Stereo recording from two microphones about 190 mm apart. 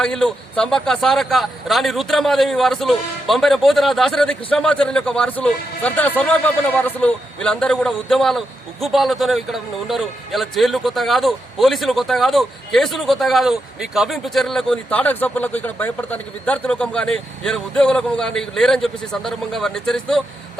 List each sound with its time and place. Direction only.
0.0 s a man's voice: 5° left (ahead or behind)